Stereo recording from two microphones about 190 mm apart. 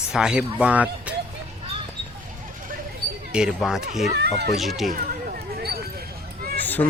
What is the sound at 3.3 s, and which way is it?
Speech, 5° right (ahead or behind).